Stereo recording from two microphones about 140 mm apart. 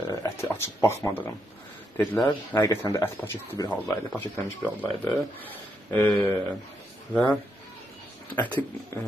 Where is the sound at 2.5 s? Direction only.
20° left (ahead or behind).